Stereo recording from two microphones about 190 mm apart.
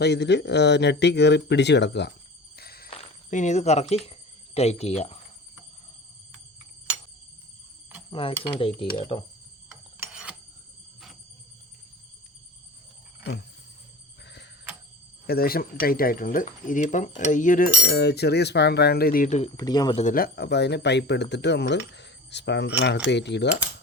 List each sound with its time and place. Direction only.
0.0 s speech: 65° left (ahead or behind)
2.6 s a sound: 55° left (ahead or behind)
2.9 s speech: 35° left (ahead or behind)
8.1 s speech: 30° left (ahead or behind)
10.0 s a sound: 5° right (ahead or behind)
15.3 s speech: 50° left (ahead or behind)
17.8 s speech: 60° left (ahead or behind); by 19.5 s 40° left (ahead or behind)
19.5 s speech: 20° left (ahead or behind)
20.0 s speech: 45° left (ahead or behind); by 23.5 s 65° left (ahead or behind)